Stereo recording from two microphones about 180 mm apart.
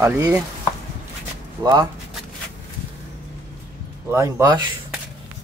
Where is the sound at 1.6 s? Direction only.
20° right (ahead or behind).